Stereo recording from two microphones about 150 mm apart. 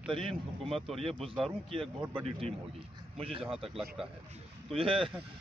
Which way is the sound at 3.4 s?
5° right (ahead or behind).